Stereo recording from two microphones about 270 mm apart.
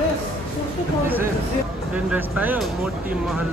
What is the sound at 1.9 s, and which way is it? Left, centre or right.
Speech, centre.